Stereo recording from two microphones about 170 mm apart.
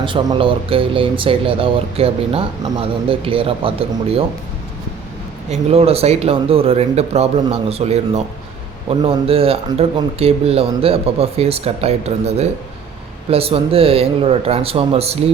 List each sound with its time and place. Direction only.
0.0 s speech: 30° right (ahead or behind)
5.5 s speech: 35° right (ahead or behind)